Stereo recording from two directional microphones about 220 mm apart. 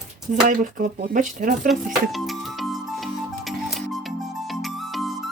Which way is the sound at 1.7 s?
Centre (ahead or behind).